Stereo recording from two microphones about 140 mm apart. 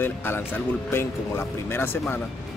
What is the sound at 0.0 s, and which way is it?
Speech, 15° left (ahead or behind).